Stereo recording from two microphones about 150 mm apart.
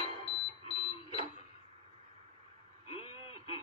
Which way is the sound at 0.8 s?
40° left (ahead or behind).